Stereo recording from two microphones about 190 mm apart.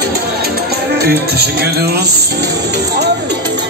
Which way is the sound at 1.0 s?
55° right (ahead or behind).